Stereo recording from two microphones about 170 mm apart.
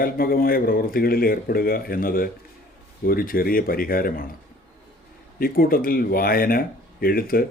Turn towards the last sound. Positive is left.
turn(degrees=60)  # may be behind; listen again after turning